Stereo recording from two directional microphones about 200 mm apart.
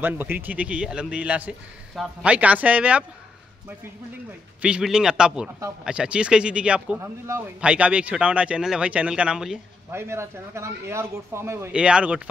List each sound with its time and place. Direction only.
0.0 s a man's voice: 10° right (ahead or behind)
4.6 s a man's voice: 5° right (ahead or behind)